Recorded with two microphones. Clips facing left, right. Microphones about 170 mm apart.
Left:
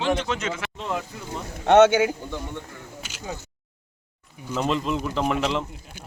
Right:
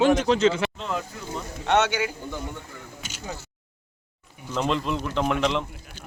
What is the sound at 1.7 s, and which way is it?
Speech, 50° left (ahead or behind).